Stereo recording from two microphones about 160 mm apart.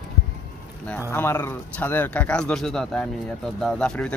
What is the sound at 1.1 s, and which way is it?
Speech, 15° left (ahead or behind).